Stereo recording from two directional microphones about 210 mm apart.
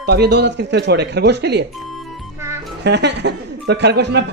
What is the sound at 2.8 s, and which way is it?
Speech, 55° right (ahead or behind).